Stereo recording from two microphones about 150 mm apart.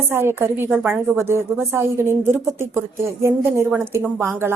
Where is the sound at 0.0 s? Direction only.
15° right (ahead or behind).